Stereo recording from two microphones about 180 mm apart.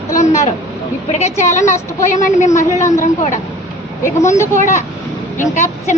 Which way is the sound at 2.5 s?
15° left (ahead or behind).